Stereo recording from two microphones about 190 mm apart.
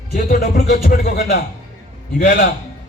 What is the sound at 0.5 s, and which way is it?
A man's voice, 50° left (ahead or behind).